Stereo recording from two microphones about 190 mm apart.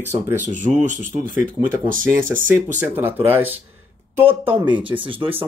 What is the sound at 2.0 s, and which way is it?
Speech, 10° right (ahead or behind).